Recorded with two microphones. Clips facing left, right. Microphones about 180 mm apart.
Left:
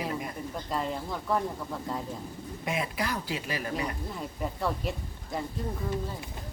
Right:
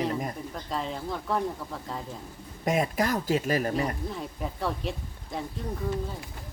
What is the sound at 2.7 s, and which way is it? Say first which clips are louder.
Speech: right 6 dB; 45° right (ahead or behind).